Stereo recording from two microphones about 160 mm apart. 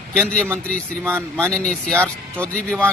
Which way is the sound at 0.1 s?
5° left (ahead or behind).